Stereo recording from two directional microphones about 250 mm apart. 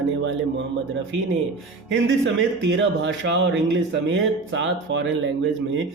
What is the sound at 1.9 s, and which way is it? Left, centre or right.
A man's voice, right.